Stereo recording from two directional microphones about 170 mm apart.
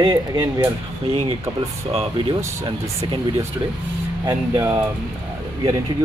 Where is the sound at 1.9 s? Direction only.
35° right (ahead or behind).